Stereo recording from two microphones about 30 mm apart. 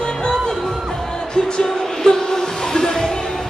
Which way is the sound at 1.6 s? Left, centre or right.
Centre.